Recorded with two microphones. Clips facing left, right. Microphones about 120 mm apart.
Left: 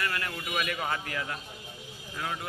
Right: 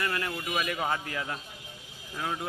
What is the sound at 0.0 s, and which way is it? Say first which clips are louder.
A man's voice: right 2 dB; 20° right (ahead or behind).